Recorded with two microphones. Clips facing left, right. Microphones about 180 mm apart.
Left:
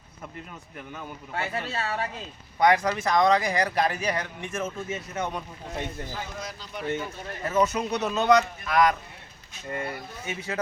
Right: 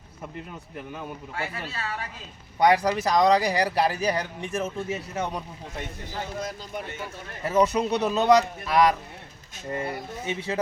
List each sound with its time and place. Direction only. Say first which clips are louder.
1.4 s speech: left 4 dB; 25° left (ahead or behind)
2.6 s speech: right 1 dB; 35° right (ahead or behind)
6.7 s speech: left 3 dB; 45° right (ahead or behind)
7.4 s speech: right 3 dB; 35° right (ahead or behind)